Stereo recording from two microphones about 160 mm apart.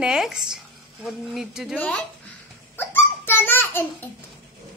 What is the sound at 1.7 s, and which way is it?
Speech, 10° left (ahead or behind).